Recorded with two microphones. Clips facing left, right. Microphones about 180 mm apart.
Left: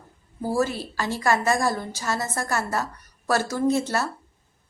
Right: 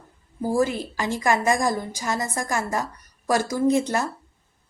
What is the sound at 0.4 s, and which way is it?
A woman's voice, 15° right (ahead or behind).